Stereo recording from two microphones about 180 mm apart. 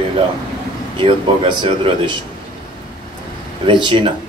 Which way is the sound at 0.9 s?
25° right (ahead or behind).